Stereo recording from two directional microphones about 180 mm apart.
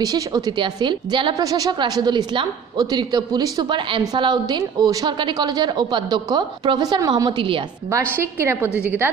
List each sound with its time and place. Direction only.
0.0 s a woman's voice: 20° right (ahead or behind)
8.2 s a woman's voice: 15° right (ahead or behind)